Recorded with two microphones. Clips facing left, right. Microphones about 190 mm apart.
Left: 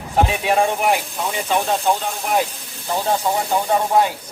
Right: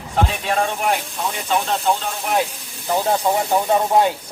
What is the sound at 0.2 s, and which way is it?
Speech, 10° left (ahead or behind).